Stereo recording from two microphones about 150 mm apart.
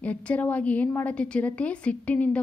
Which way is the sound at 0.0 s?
10° left (ahead or behind).